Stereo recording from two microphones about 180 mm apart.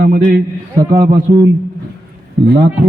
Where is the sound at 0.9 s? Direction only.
20° right (ahead or behind).